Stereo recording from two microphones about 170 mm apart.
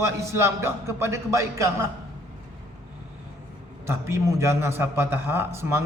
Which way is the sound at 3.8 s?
15° right (ahead or behind).